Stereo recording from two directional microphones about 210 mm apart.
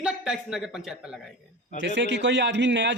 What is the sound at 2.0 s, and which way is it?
Speech, 55° right (ahead or behind).